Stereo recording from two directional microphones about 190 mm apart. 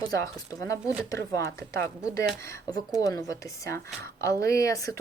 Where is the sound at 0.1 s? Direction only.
15° left (ahead or behind).